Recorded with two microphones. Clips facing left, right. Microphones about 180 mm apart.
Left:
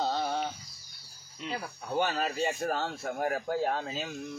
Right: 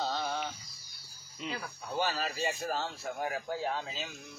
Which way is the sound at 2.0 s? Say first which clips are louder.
Left 4 dB; 55° left (ahead or behind).